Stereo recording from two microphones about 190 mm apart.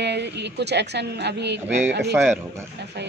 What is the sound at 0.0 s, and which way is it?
A woman's voice, 65° right (ahead or behind).